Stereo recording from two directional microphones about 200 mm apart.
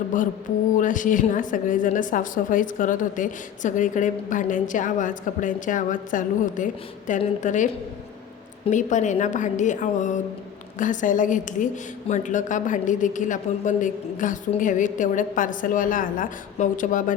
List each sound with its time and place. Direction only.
0.1 s a woman's voice: 40° left (ahead or behind)